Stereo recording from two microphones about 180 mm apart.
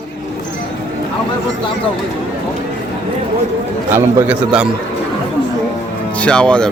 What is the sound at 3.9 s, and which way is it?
Speech, 15° right (ahead or behind).